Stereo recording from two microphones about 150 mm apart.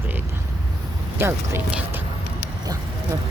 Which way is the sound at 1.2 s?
15° right (ahead or behind).